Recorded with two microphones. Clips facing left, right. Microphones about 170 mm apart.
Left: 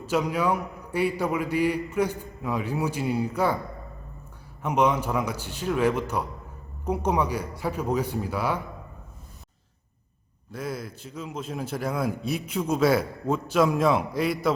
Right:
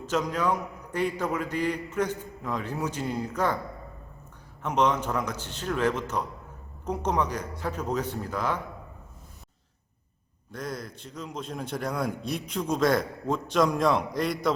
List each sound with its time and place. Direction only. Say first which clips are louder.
0.0 s a man's voice: left 2 dB; 10° left (ahead or behind)
4.6 s a man's voice: left 2 dB; 10° left (ahead or behind)
10.5 s a man's voice: left 2 dB; 5° left (ahead or behind)